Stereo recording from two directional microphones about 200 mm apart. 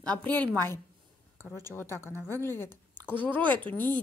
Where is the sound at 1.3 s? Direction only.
10° left (ahead or behind).